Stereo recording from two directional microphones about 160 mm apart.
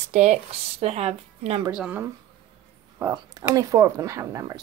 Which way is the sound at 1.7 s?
5° right (ahead or behind).